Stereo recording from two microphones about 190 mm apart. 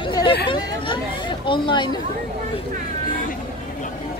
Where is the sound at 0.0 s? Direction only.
25° left (ahead or behind).